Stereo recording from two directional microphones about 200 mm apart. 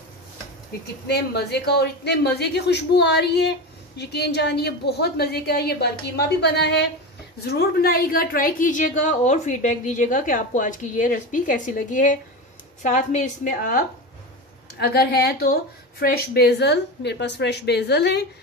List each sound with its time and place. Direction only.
1.0 s a woman's voice: 55° left (ahead or behind)